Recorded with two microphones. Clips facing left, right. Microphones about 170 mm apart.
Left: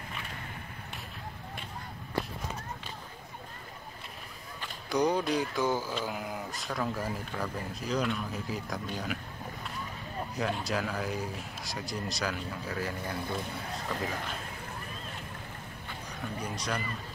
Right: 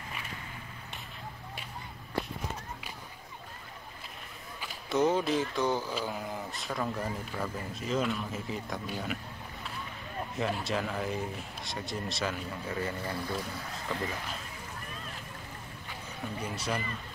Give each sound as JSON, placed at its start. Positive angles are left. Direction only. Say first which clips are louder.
{"t": 4.6, "sound": "speech", "louder": "right 1 dB", "side_deg": -5}
{"t": 10.3, "sound": "speech", "louder": "even", "side_deg": 0}
{"t": 16.3, "sound": "speech", "louder": "right 1 dB", "side_deg": -5}